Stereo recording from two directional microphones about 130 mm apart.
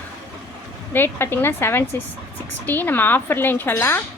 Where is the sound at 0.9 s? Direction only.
15° left (ahead or behind).